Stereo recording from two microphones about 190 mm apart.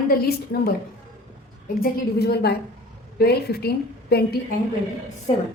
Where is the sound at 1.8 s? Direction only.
55° left (ahead or behind).